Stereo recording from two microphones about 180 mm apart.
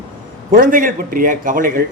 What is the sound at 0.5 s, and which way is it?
A man's voice, 50° right (ahead or behind).